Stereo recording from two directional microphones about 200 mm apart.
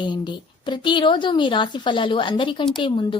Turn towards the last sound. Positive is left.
turn(degrees=25)  # may be behind; listen again after turning